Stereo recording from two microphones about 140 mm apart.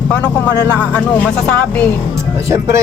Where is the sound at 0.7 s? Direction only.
15° left (ahead or behind).